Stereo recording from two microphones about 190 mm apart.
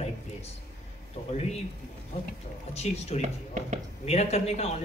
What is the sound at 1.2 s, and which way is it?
Speech, 30° left (ahead or behind).